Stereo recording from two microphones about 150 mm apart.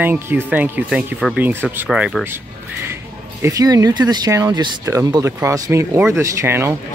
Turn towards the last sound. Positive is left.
turn(degrees=-20)  # may be behind; listen again after turning